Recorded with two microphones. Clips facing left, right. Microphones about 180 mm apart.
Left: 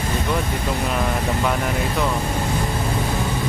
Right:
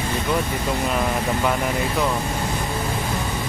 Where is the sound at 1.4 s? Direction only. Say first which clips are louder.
Even; centre (ahead or behind).